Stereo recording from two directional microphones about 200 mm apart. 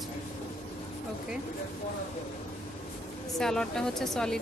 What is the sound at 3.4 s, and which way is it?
A woman's voice, 5° left (ahead or behind).